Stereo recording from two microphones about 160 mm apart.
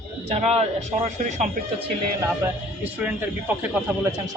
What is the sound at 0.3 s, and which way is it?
A man's voice, 45° right (ahead or behind).